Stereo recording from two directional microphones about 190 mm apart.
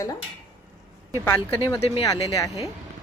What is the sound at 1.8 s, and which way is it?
Speech, 30° left (ahead or behind).